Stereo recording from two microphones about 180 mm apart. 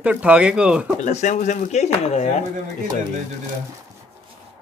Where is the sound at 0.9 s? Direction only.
40° left (ahead or behind).